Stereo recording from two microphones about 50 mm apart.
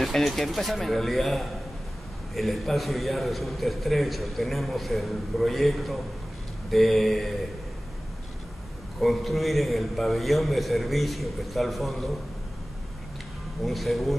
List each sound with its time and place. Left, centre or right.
0.0 s a man's voice: centre
9.0 s a man's voice: centre
13.7 s a man's voice: centre